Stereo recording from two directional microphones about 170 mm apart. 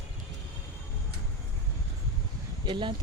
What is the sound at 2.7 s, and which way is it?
Speech, 25° right (ahead or behind).